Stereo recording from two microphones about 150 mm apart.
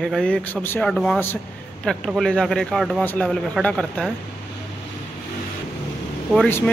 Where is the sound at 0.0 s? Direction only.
5° left (ahead or behind).